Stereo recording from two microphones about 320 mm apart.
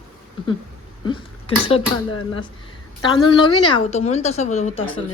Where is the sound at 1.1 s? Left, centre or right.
Centre.